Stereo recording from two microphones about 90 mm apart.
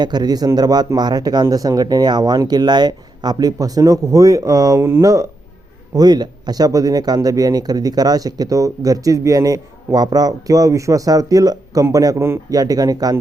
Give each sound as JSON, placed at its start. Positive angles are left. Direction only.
{"t": 0.0, "sound": "speech", "side_deg": -50}